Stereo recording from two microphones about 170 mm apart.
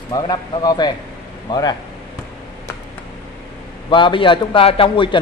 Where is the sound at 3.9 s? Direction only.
30° left (ahead or behind).